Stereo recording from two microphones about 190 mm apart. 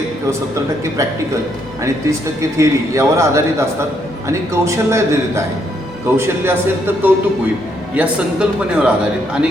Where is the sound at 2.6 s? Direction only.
15° right (ahead or behind).